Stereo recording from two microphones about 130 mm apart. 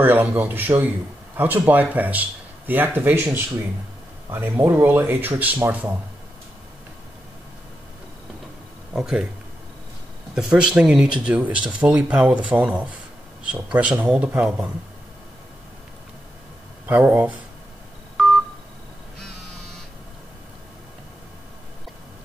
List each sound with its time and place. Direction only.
0.0 s speech: 15° right (ahead or behind)
8.9 s speech: 5° right (ahead or behind)
10.3 s speech: 5° right (ahead or behind)
16.8 s speech: 15° right (ahead or behind)
18.2 s telephone dialing: centre (ahead or behind)